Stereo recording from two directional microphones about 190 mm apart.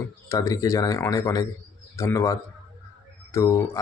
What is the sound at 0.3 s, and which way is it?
Speech, 15° left (ahead or behind).